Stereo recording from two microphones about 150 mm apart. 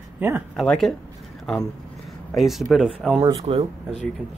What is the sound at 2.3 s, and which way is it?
Speech, centre (ahead or behind).